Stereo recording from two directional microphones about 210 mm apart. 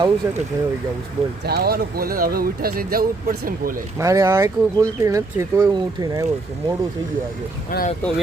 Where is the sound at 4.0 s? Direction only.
15° right (ahead or behind).